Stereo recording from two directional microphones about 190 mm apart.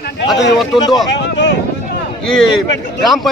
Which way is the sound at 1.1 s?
65° left (ahead or behind).